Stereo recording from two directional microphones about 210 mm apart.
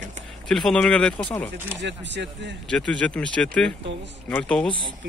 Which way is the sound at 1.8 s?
55° right (ahead or behind).